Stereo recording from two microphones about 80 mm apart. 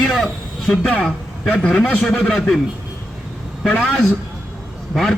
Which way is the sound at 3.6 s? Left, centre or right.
Centre.